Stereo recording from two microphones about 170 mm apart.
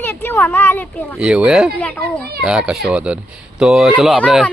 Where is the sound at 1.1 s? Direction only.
5° right (ahead or behind).